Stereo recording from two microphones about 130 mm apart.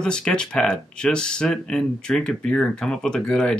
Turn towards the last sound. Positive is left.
turn(degrees=5)  # may be behind; listen again after turning